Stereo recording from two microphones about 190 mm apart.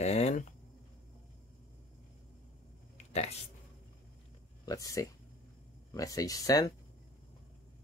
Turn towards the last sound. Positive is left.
turn(degrees=20)  # may be behind; listen again after turning